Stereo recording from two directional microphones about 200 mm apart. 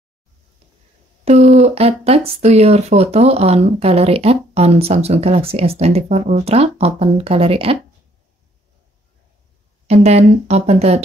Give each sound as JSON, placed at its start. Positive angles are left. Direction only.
{"t": 1.2, "sound": "speech", "side_deg": -35}
{"t": 9.8, "sound": "speech", "side_deg": -30}